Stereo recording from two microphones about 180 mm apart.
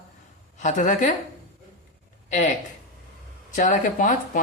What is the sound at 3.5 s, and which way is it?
Speech, 45° left (ahead or behind).